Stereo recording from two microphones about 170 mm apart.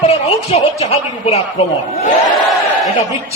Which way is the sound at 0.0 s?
35° left (ahead or behind).